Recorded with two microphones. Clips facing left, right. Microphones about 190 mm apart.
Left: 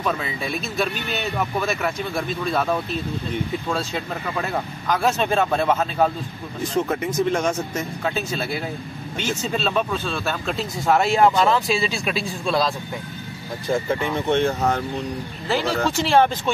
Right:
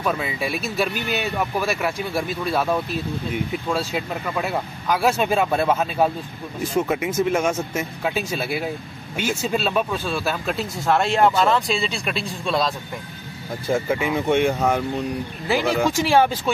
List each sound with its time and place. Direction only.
0.0 s speech: 5° right (ahead or behind)